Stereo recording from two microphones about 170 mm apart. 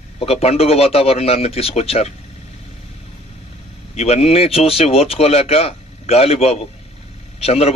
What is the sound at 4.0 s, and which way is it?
A man's voice, 40° left (ahead or behind).